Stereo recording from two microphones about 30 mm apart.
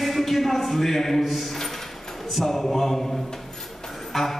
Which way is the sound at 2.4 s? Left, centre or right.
Centre.